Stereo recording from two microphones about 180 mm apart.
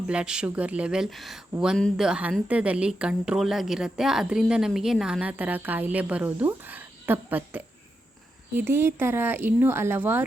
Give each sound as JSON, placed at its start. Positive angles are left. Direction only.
{"t": 0.1, "sound": "speech", "side_deg": -5}